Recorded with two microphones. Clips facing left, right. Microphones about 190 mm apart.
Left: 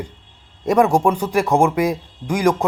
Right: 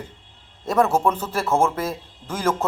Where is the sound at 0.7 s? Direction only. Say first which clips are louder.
Left 4 dB; 15° left (ahead or behind).